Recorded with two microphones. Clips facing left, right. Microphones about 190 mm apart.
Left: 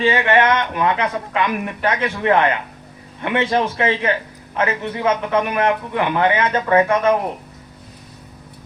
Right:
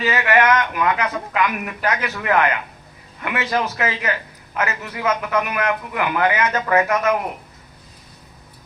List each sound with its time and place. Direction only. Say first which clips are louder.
0.0 s a man's voice: left 2 dB; 30° left (ahead or behind)